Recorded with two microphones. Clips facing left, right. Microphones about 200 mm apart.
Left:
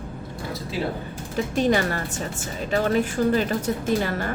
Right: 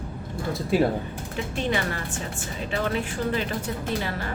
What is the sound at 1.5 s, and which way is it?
A woman's voice, 40° left (ahead or behind).